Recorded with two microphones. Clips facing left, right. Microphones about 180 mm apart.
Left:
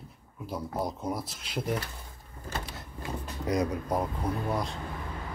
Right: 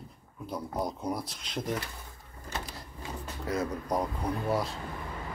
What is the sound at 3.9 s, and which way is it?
Speech, centre (ahead or behind).